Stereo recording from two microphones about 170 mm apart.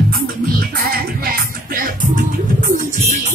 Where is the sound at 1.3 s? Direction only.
55° right (ahead or behind).